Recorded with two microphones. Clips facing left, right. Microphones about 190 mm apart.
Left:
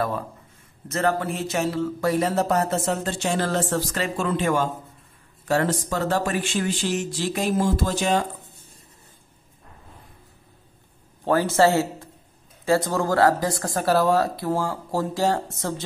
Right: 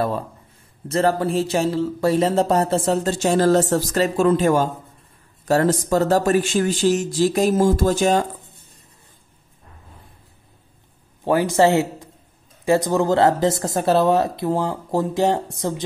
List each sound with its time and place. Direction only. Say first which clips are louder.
0.8 s speech: right 4 dB; 30° right (ahead or behind)
11.2 s a man's voice: right 2 dB; 15° right (ahead or behind)